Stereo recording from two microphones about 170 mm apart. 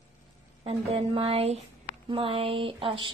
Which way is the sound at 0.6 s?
35° right (ahead or behind).